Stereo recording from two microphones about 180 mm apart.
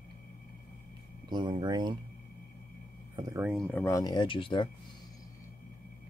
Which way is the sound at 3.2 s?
20° right (ahead or behind).